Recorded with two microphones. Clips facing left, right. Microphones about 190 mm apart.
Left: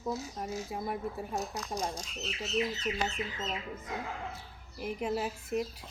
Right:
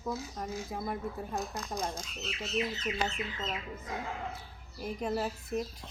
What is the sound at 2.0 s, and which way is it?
Speech, 40° left (ahead or behind).